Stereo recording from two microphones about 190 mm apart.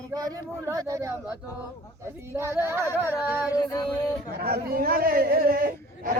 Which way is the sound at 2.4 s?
15° right (ahead or behind).